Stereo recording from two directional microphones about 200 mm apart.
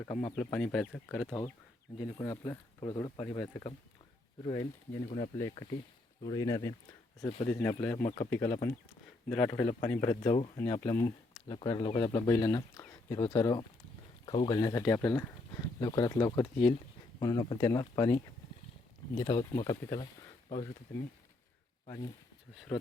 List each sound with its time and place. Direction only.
0.1 s speech: 35° left (ahead or behind)
0.3 s speech: 5° left (ahead or behind)
2.0 s speech: 20° left (ahead or behind)
5.0 s speech: 30° left (ahead or behind)
5.4 s speech: 15° left (ahead or behind)
8.0 s speech: 30° left (ahead or behind)
8.3 s speech: 10° left (ahead or behind)
21.8 s speech: 15° left (ahead or behind)